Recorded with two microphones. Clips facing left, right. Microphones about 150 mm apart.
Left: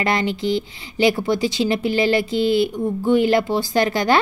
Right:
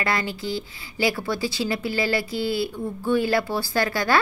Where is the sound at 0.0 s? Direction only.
20° left (ahead or behind).